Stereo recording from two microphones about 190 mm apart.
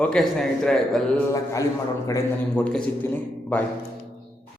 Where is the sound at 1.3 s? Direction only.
15° left (ahead or behind).